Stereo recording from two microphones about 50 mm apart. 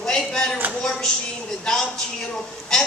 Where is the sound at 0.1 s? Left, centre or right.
Centre.